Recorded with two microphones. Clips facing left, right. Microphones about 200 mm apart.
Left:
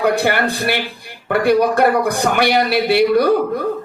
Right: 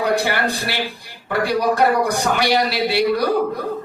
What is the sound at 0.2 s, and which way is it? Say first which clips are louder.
A man's voice: left 4 dB; 55° left (ahead or behind).